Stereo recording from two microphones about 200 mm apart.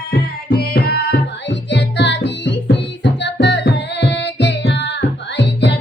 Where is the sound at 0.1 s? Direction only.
50° left (ahead or behind).